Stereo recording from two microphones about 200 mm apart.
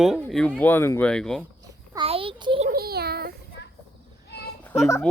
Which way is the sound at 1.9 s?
30° right (ahead or behind).